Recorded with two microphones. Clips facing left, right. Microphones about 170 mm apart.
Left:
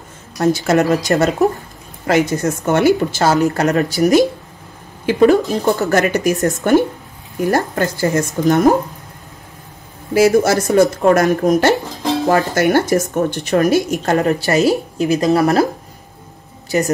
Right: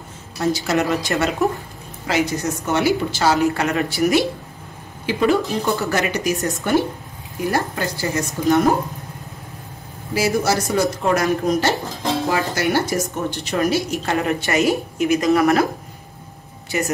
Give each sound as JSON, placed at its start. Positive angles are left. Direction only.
{"t": 0.4, "sound": "speech", "side_deg": 50}
{"t": 2.0, "sound": "speech", "side_deg": 50}
{"t": 10.3, "sound": "a woman's voice", "side_deg": 55}
{"t": 16.7, "sound": "a woman's voice", "side_deg": 40}